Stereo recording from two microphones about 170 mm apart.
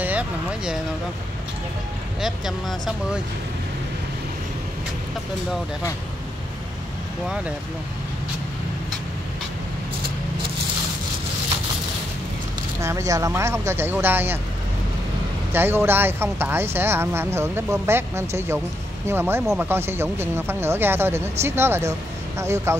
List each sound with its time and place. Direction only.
0.0 s speech: 10° right (ahead or behind)
12.8 s speech: 20° right (ahead or behind)
15.5 s speech: 15° right (ahead or behind)